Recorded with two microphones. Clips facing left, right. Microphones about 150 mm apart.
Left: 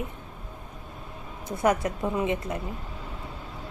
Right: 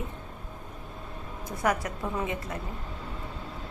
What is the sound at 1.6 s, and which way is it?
A woman's voice, 25° left (ahead or behind).